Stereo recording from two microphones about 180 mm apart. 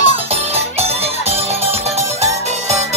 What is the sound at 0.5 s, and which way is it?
Music, 35° right (ahead or behind).